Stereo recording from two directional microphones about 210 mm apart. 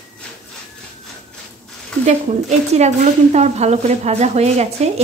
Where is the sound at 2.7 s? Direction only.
30° right (ahead or behind).